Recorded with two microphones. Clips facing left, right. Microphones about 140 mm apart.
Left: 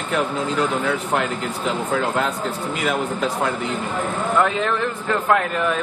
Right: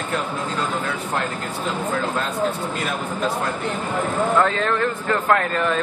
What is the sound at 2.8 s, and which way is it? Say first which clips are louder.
Speech: left 7 dB; 90° left.